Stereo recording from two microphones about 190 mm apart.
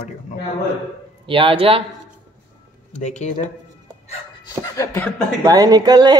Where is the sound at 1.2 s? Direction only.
30° right (ahead or behind).